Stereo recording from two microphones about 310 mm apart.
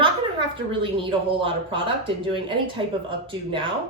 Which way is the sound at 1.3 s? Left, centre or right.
Centre.